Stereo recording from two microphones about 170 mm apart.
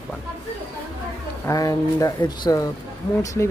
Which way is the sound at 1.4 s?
20° left (ahead or behind).